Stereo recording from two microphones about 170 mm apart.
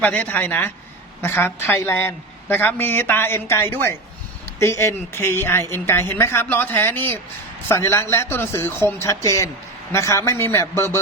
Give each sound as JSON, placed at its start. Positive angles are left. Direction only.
{"t": 0.0, "sound": "a woman's voice", "side_deg": 10}